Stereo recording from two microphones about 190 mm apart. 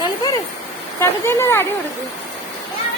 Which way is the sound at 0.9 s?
15° left (ahead or behind).